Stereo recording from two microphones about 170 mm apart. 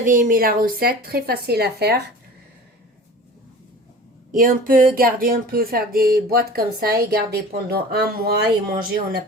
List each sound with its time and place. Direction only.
0.0 s speech: 50° right (ahead or behind); by 2.0 s 70° right (ahead or behind)
4.3 s speech: 55° right (ahead or behind)